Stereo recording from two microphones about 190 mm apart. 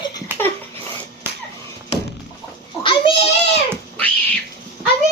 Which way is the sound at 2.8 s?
25° left (ahead or behind).